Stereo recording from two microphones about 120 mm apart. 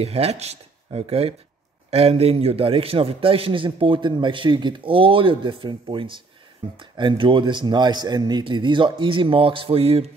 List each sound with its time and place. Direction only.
0.0 s a man's voice: 60° right (ahead or behind)